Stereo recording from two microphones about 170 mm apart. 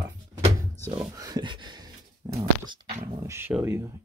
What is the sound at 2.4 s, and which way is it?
Speech, 30° right (ahead or behind).